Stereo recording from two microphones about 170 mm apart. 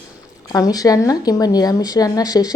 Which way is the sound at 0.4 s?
20° left (ahead or behind).